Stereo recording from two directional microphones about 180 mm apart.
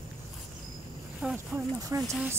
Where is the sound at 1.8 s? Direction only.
20° right (ahead or behind).